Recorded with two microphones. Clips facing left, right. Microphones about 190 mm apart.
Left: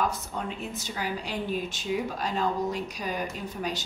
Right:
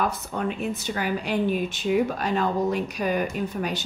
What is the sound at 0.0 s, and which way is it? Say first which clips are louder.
Speech: right 4 dB; 60° right (ahead or behind).